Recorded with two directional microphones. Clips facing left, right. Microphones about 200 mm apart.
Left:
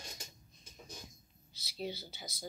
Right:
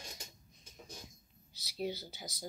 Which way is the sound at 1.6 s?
15° right (ahead or behind).